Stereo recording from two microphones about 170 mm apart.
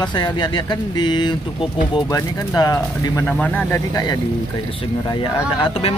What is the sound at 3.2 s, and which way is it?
Speech, 5° left (ahead or behind).